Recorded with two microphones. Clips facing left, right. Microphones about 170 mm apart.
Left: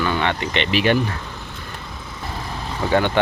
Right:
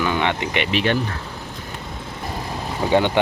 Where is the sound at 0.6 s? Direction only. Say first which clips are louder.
Left 3 dB; 5° left (ahead or behind).